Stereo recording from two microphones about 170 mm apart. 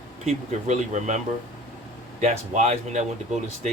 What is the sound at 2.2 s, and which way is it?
Speech, 45° right (ahead or behind).